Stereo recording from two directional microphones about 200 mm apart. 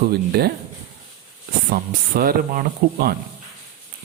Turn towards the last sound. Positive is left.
turn(degrees=-45)  # may be behind; listen again after turning